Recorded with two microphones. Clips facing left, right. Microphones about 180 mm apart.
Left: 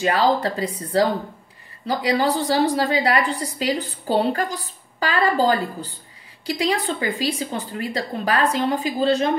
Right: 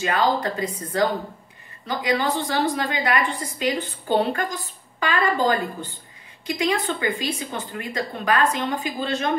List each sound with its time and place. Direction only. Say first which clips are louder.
0.0 s a woman's voice: left 3 dB; 35° left (ahead or behind)